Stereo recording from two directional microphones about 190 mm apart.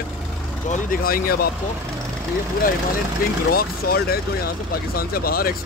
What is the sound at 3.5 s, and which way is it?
Speech, 55° left (ahead or behind).